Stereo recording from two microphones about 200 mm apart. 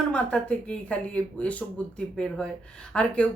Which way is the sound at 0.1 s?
5° left (ahead or behind).